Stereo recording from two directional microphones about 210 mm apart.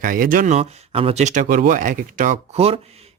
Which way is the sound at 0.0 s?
40° right (ahead or behind).